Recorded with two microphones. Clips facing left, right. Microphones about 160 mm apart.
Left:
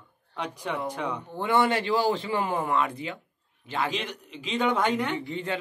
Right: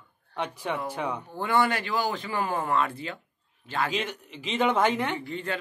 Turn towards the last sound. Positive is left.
turn(degrees=20)  # may be behind; listen again after turning